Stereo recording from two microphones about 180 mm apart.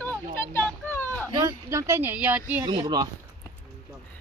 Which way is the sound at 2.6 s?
25° right (ahead or behind).